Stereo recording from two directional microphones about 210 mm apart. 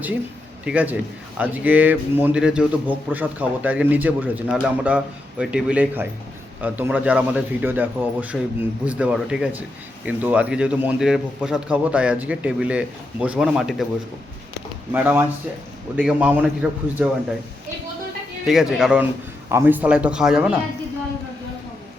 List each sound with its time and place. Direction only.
0.6 s a man's voice: 5° right (ahead or behind)
14.9 s a man's voice: 10° right (ahead or behind)
18.4 s a man's voice: centre (ahead or behind)